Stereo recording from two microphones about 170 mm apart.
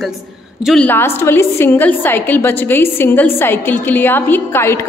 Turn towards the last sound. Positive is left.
turn(degrees=15)  # may be behind; listen again after turning